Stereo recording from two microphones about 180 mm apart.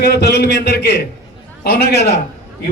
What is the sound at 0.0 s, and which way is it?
Speech, 65° left (ahead or behind).